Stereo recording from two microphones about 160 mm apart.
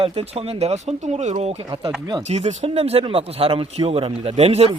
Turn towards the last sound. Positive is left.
turn(degrees=-40)  # may be behind; listen again after turning